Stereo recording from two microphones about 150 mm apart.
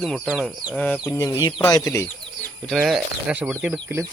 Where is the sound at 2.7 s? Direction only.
5° right (ahead or behind).